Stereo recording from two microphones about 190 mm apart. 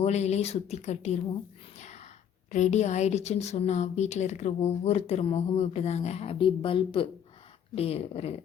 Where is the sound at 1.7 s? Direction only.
35° left (ahead or behind).